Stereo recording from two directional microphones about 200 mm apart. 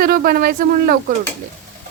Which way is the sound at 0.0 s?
50° right (ahead or behind).